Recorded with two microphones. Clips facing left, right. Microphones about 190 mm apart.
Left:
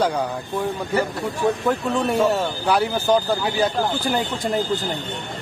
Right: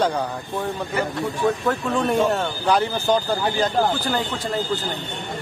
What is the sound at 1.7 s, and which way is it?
Speech, 10° left (ahead or behind).